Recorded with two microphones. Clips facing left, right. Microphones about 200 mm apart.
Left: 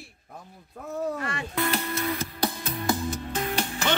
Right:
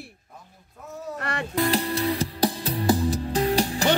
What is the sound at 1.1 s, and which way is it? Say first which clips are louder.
Music: right 2 dB; 65° right (ahead or behind).